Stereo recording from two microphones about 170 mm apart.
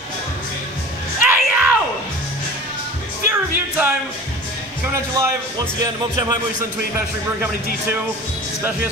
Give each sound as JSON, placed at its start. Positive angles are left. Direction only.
{"t": 1.2, "sound": "yell", "side_deg": -10}
{"t": 3.3, "sound": "music", "side_deg": -10}
{"t": 4.9, "sound": "speech", "side_deg": -15}